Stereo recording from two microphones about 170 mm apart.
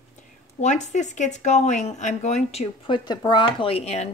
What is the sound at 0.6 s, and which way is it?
Speech, 45° left (ahead or behind).